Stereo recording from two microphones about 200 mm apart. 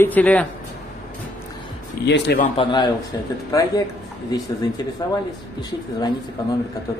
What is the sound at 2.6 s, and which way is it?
A man's voice, 20° left (ahead or behind).